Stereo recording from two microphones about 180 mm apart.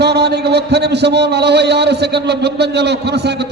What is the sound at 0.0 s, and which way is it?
A man's voice, 65° right (ahead or behind).